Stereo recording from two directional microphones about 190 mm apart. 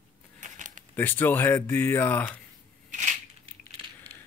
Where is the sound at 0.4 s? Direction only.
40° right (ahead or behind).